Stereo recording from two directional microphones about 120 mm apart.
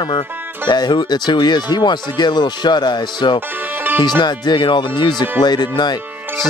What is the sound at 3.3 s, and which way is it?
Music, 15° right (ahead or behind).